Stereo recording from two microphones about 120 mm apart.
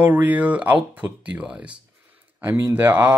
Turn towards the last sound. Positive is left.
turn(degrees=-20)  # may be behind; listen again after turning